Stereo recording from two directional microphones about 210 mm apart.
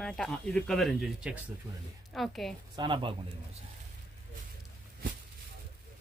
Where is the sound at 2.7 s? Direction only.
25° right (ahead or behind).